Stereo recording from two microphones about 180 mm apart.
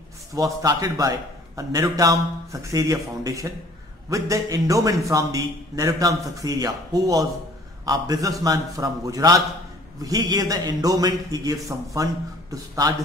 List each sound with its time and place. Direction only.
0.3 s a man's voice: 20° right (ahead or behind)